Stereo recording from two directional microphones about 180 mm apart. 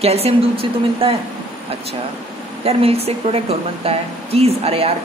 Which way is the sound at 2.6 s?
35° right (ahead or behind).